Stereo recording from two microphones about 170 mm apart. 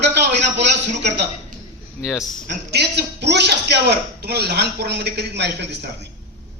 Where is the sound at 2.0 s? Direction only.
Centre (ahead or behind).